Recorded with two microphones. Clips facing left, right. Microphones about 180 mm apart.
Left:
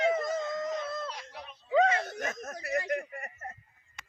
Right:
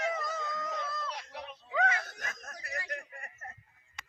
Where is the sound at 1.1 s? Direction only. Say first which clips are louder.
Right 1 dB; 65° right (ahead or behind).